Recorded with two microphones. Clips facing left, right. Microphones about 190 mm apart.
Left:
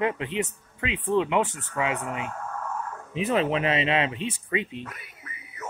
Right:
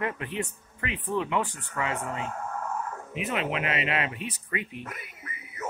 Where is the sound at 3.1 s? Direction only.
35° left (ahead or behind).